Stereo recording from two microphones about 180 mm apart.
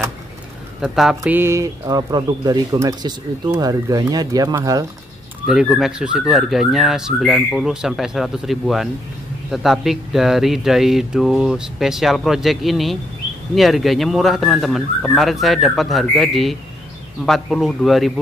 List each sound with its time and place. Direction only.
0.7 s speech: centre (ahead or behind); by 4.8 s 20° right (ahead or behind)
5.5 s speech: 5° right (ahead or behind)